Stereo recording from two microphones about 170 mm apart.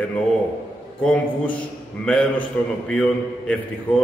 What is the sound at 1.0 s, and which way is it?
A man's voice, 10° left (ahead or behind).